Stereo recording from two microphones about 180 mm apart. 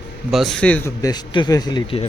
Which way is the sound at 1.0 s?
20° left (ahead or behind).